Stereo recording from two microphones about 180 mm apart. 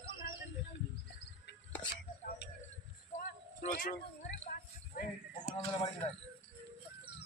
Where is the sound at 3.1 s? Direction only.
45° left (ahead or behind).